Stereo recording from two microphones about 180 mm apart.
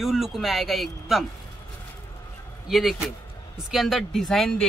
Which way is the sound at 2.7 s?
Centre (ahead or behind).